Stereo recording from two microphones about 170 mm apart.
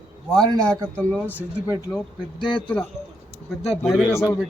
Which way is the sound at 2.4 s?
30° left (ahead or behind).